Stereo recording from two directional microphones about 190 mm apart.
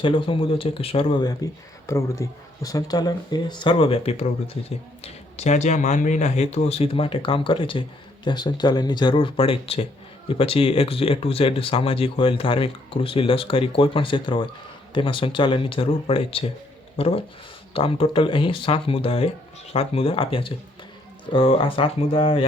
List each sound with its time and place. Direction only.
0.0 s speech: 25° left (ahead or behind)